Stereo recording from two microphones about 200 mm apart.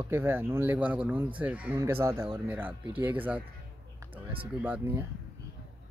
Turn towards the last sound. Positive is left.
turn(degrees=-10)  # may be behind; listen again after turning